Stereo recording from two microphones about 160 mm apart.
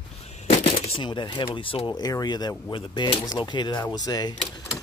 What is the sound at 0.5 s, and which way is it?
Speech, 40° left (ahead or behind).